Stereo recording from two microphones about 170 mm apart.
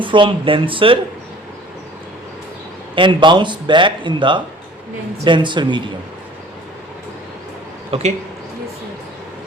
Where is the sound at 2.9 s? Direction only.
30° right (ahead or behind).